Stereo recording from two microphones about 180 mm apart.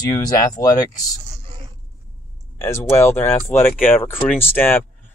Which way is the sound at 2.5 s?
15° left (ahead or behind).